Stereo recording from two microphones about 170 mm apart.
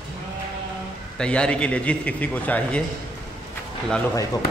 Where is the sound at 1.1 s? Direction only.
5° left (ahead or behind).